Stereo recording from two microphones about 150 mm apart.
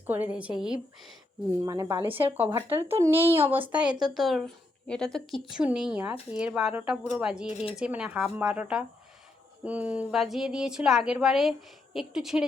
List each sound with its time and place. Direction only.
0.1 s speech: 10° right (ahead or behind)
1.6 s a woman's voice: 25° right (ahead or behind)
2.0 s speech: 35° right (ahead or behind)
2.3 s a woman's voice: 15° right (ahead or behind)
7.4 s speech: 45° left (ahead or behind)
7.8 s a woman's voice: 5° right (ahead or behind)